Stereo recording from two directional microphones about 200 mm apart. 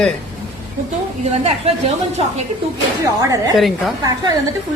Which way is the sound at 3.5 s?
Centre (ahead or behind).